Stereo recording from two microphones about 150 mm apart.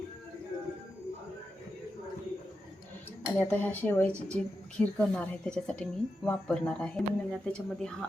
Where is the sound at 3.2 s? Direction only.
15° left (ahead or behind).